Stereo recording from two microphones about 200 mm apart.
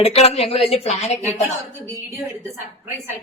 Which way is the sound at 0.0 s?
30° left (ahead or behind).